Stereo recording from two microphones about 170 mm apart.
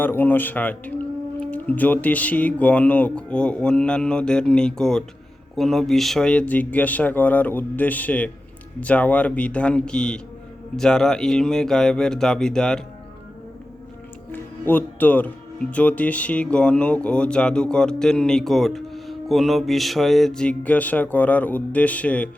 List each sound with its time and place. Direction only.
0.0 s speech: 10° left (ahead or behind)
14.3 s music: 10° left (ahead or behind)
15.7 s speech: 10° left (ahead or behind)